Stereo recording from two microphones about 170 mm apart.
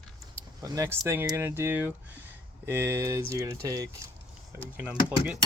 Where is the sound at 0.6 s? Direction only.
20° right (ahead or behind).